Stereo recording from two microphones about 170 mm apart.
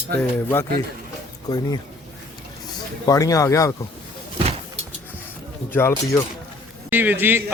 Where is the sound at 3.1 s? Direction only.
20° left (ahead or behind).